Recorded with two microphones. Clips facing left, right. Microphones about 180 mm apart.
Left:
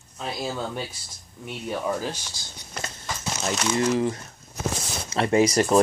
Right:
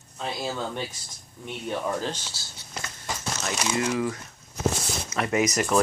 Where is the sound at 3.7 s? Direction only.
30° left (ahead or behind).